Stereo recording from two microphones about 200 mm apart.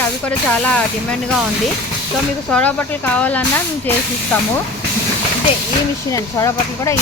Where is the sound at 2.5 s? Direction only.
5° left (ahead or behind).